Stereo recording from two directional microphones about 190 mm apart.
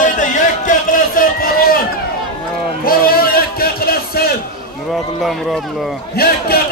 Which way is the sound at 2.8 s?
50° left (ahead or behind).